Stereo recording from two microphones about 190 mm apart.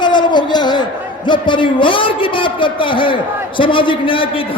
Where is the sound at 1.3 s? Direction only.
25° left (ahead or behind).